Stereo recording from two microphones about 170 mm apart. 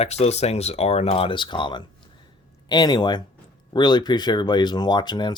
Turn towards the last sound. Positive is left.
turn(degrees=25)  # may be behind; listen again after turning